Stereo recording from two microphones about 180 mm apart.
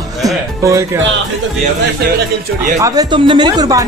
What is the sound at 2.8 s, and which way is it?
Speech, 20° right (ahead or behind).